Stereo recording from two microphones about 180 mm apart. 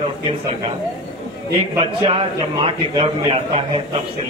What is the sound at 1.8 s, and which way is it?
A man's voice, 30° right (ahead or behind).